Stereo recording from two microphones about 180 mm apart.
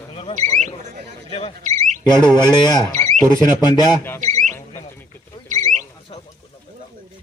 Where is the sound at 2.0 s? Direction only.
25° left (ahead or behind).